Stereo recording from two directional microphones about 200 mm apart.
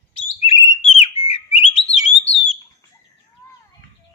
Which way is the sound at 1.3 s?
30° left (ahead or behind).